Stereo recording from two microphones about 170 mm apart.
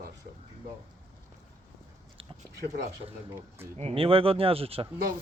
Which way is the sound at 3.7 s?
35° right (ahead or behind).